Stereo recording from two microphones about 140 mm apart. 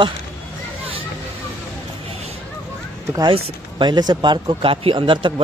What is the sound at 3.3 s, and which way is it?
Speech, 35° right (ahead or behind).